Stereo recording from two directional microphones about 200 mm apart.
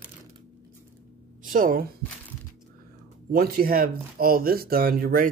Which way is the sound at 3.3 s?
50° right (ahead or behind).